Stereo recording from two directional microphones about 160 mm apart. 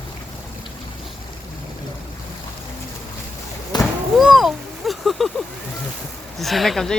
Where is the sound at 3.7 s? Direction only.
25° left (ahead or behind).